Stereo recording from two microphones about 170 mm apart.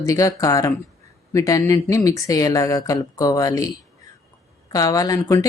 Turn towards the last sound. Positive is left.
turn(degrees=20)  # may be behind; listen again after turning